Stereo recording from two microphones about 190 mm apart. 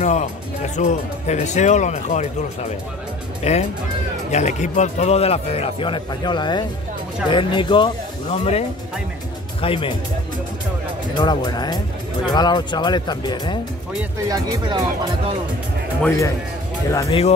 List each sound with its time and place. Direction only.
0.0 s speech: 35° left (ahead or behind)
3.4 s speech: 35° left (ahead or behind)
11.1 s speech: 20° left (ahead or behind)
14.3 s speech: 20° right (ahead or behind)
16.0 s speech: 15° left (ahead or behind)